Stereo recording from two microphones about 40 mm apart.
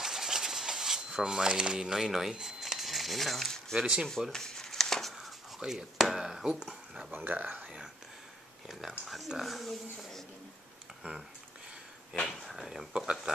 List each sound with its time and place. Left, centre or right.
0.0 s a sound: centre
2.4 s crumpling: centre
3.8 s speech: right
4.3 s a sound: centre
5.6 s speech: centre
5.9 s speech: centre
6.2 s speech: centre
6.6 s a sound: centre
7.2 s speech: right
9.0 s speech: centre
12.2 s a sound: centre
12.4 s speech: centre
12.9 s speech: right